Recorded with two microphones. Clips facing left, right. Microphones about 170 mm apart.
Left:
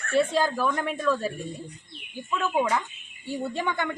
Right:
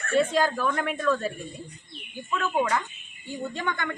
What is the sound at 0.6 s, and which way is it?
Speech, 5° left (ahead or behind).